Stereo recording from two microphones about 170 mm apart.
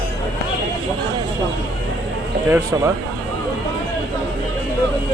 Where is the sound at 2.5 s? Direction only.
15° right (ahead or behind).